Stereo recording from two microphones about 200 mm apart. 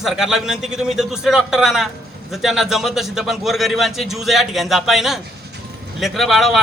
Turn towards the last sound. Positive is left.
turn(degrees=0)  # may be behind; listen again after turning